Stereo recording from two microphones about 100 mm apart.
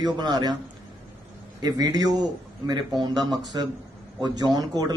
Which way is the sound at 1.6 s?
40° right (ahead or behind).